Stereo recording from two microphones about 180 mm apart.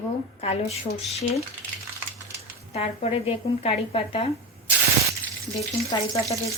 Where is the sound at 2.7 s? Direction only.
35° left (ahead or behind).